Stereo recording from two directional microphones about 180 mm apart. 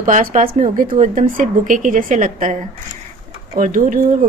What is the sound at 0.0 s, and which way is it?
Speech, 45° right (ahead or behind).